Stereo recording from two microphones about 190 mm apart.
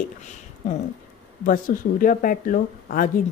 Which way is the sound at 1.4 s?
45° left (ahead or behind).